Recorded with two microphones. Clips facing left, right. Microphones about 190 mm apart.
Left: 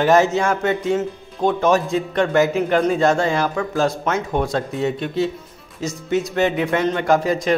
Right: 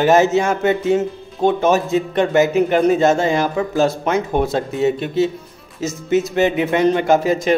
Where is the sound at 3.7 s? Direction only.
10° right (ahead or behind).